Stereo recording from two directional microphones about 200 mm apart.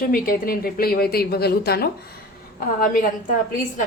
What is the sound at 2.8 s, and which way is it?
Speech, 40° left (ahead or behind).